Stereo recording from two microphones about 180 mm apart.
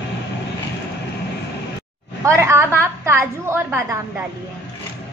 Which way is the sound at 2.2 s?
15° right (ahead or behind).